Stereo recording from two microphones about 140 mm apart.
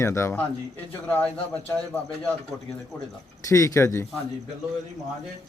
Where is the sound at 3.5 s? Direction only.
20° left (ahead or behind).